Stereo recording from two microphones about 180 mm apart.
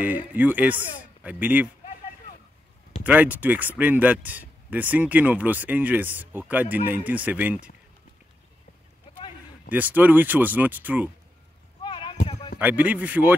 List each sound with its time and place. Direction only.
0.0 s speech: 10° right (ahead or behind)
3.0 s speech: 10° right (ahead or behind)
9.7 s speech: 10° right (ahead or behind)
11.8 s a sound: 25° left (ahead or behind)
12.5 s speech: 10° right (ahead or behind)